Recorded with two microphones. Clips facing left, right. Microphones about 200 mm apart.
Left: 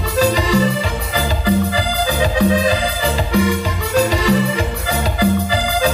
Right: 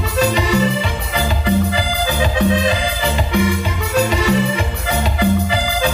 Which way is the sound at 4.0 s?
35° left (ahead or behind).